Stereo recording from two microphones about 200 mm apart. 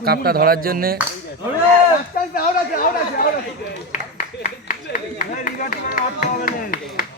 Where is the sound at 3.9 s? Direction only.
40° left (ahead or behind).